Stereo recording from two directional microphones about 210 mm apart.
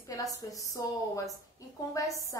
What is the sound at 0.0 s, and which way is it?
A woman's voice, 15° left (ahead or behind).